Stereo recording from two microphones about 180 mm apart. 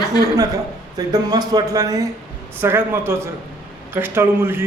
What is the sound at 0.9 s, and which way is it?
Speech, 20° right (ahead or behind).